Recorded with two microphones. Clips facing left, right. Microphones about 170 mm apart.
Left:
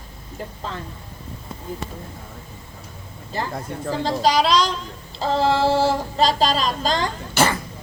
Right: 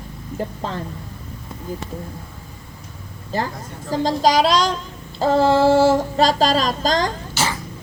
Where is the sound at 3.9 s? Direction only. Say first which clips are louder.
Right 3 dB; 40° right (ahead or behind).